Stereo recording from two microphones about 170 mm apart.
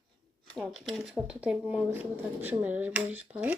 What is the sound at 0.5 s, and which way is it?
Speech, centre (ahead or behind).